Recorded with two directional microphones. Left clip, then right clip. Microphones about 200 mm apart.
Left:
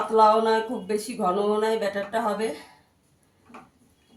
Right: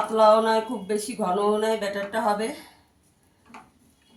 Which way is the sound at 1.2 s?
30° left (ahead or behind).